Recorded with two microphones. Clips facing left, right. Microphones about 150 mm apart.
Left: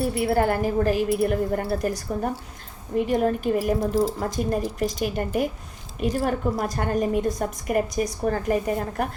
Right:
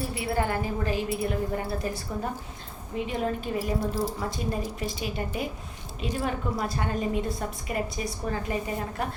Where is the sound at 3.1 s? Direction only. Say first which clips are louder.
Left 7 dB; 50° left (ahead or behind).